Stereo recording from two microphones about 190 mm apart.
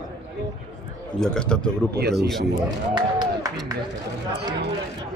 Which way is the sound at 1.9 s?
55° right (ahead or behind).